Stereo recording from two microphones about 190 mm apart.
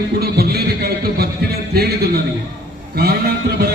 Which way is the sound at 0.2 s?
55° right (ahead or behind).